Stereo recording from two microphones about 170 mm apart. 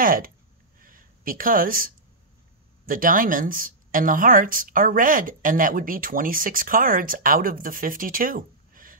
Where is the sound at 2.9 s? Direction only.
55° right (ahead or behind).